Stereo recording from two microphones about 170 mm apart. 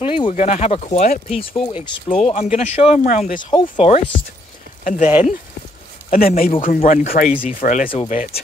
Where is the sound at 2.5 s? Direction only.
40° left (ahead or behind).